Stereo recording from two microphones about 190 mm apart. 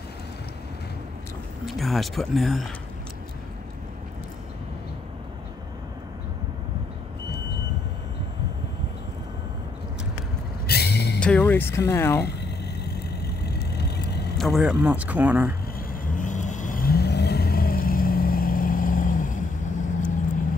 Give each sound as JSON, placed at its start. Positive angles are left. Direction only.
{"t": 1.7, "sound": "speech", "side_deg": 0}
{"t": 10.7, "sound": "vehicle", "side_deg": 60}
{"t": 11.1, "sound": "speech", "side_deg": 5}
{"t": 12.8, "sound": "vehicle", "side_deg": 60}
{"t": 14.4, "sound": "speech", "side_deg": 0}
{"t": 15.9, "sound": "vehicle", "side_deg": 40}